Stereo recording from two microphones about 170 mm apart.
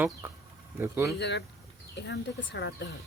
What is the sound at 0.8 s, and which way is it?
Speech, 15° right (ahead or behind).